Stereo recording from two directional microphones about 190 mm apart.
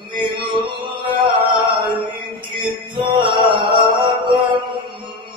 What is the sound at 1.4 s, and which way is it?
Music, 25° right (ahead or behind).